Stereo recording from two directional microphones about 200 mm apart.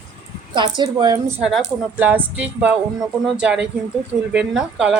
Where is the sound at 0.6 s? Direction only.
20° right (ahead or behind).